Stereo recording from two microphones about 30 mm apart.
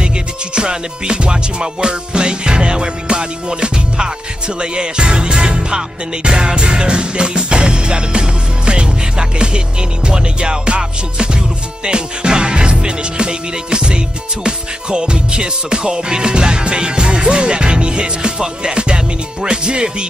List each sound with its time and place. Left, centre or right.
0.6 s music: right
11.8 s music: right